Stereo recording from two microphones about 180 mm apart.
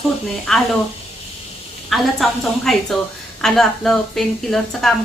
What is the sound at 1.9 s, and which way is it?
A woman's voice, centre (ahead or behind).